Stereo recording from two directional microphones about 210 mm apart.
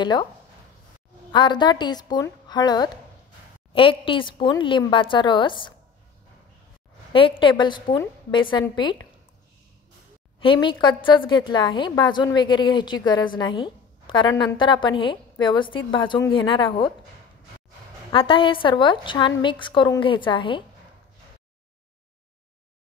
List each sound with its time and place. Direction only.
0.0 s a woman's voice: 20° left (ahead or behind)
1.3 s a woman's voice: 20° left (ahead or behind)
7.1 s a woman's voice: 25° left (ahead or behind)
10.4 s a woman's voice: 25° left (ahead or behind)
18.1 s a woman's voice: 25° left (ahead or behind)